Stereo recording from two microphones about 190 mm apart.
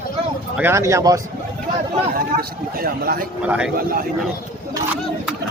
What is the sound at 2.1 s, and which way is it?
A man's voice, 50° right (ahead or behind).